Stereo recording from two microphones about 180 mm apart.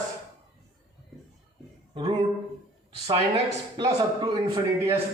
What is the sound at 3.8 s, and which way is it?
A man's voice, 25° right (ahead or behind).